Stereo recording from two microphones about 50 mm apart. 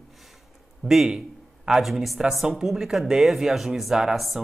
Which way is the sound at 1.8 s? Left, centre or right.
Centre.